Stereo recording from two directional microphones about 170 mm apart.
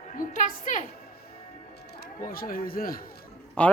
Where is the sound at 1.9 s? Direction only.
60° left (ahead or behind).